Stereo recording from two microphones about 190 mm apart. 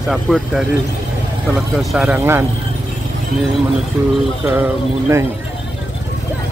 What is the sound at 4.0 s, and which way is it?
Speech, 10° right (ahead or behind).